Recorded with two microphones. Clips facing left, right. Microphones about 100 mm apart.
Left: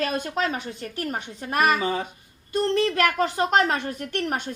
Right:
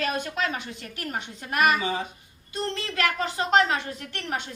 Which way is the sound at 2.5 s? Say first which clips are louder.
Left 9 dB; 45° left (ahead or behind).